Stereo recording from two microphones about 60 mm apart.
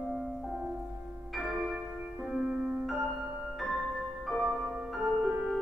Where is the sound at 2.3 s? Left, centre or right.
Centre.